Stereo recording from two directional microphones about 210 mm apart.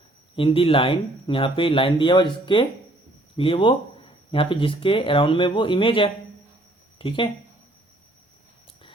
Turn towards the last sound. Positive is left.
turn(degrees=25)  # may be behind; listen again after turning